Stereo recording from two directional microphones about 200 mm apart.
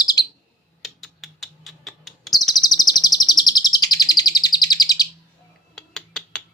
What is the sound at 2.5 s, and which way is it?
Chirp, 20° left (ahead or behind).